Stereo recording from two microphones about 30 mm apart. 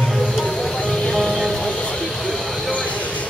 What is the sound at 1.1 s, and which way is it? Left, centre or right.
Music, centre.